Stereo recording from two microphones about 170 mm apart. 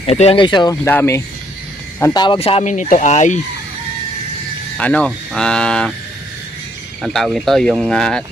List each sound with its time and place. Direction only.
0.0 s speech: 35° left (ahead or behind)
0.9 s speech: 15° left (ahead or behind)
2.2 s speech: 30° left (ahead or behind)
4.8 s speech: 5° left (ahead or behind)
7.0 s speech: centre (ahead or behind)